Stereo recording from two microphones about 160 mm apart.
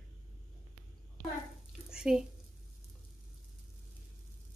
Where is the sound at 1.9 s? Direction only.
5° right (ahead or behind).